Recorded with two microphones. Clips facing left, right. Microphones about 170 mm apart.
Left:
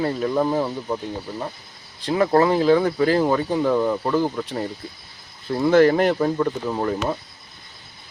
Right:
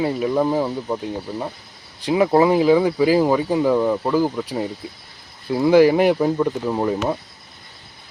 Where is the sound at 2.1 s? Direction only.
10° right (ahead or behind).